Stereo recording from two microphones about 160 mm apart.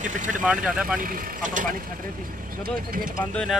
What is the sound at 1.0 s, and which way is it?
Speech, 60° right (ahead or behind).